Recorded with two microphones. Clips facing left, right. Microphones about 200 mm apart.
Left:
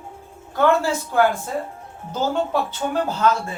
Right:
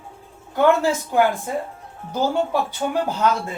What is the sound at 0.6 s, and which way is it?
Speech, 15° right (ahead or behind).